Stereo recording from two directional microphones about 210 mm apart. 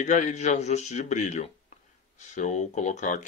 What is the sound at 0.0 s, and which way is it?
Speech, 35° left (ahead or behind).